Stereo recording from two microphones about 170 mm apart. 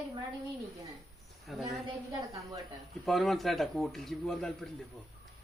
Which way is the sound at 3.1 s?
Centre (ahead or behind).